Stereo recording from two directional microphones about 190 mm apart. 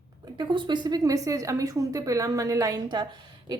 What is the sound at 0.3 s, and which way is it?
A woman's voice, 25° right (ahead or behind).